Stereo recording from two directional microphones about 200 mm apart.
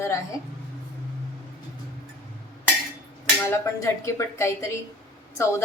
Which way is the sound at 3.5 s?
15° left (ahead or behind).